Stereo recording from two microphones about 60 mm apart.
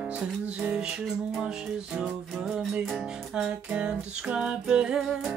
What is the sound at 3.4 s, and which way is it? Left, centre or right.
Female singing, centre.